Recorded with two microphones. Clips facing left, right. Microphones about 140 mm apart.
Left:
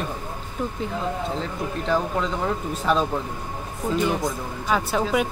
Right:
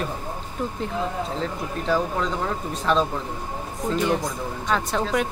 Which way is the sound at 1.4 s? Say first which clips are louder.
Even; centre (ahead or behind).